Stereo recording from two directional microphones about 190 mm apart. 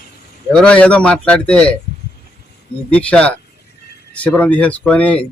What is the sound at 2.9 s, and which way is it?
Speech, 5° left (ahead or behind).